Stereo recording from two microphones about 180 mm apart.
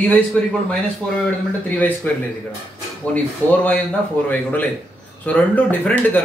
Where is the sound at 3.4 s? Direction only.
15° right (ahead or behind).